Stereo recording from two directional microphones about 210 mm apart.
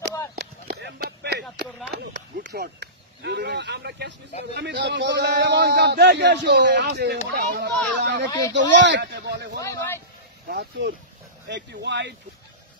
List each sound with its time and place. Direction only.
0.4 s a sound: 50° right (ahead or behind)
2.1 s a man's voice: 50° right (ahead or behind)
8.3 s a man's voice: 15° left (ahead or behind)
8.5 s a man's voice: 60° right (ahead or behind)
9.6 s a man's voice: 15° left (ahead or behind)
10.5 s a man's voice: 50° right (ahead or behind)